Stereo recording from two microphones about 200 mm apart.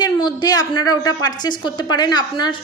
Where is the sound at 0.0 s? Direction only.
20° left (ahead or behind).